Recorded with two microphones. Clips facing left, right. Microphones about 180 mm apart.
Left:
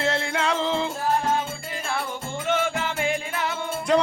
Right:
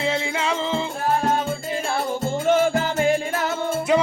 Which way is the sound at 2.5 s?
35° right (ahead or behind).